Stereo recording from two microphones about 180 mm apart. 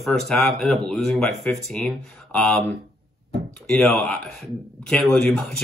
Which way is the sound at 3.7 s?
5° left (ahead or behind).